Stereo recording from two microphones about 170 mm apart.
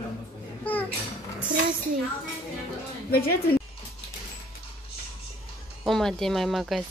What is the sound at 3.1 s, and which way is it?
Speech, 65° left (ahead or behind).